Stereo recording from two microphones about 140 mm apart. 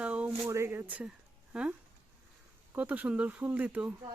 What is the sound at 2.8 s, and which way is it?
Speech, 10° right (ahead or behind).